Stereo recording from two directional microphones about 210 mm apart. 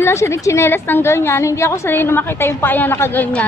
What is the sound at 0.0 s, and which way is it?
A woman's voice, 15° left (ahead or behind).